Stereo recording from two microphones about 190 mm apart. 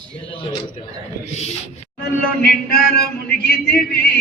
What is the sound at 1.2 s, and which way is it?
Speech, 35° left (ahead or behind).